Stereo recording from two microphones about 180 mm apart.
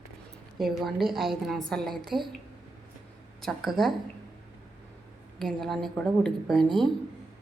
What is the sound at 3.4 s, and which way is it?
Speech, centre (ahead or behind).